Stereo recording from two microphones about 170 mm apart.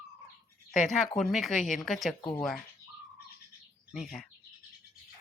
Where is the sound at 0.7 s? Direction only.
Centre (ahead or behind).